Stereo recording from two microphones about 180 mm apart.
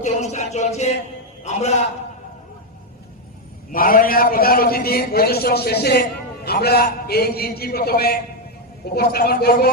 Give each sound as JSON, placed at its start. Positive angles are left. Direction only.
{"t": 0.0, "sound": "a sound", "side_deg": 40}
{"t": 1.5, "sound": "a man's voice", "side_deg": 40}
{"t": 3.7, "sound": "a man's voice", "side_deg": 50}